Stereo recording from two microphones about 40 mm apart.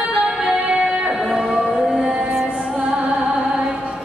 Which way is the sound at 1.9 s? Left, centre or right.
Centre.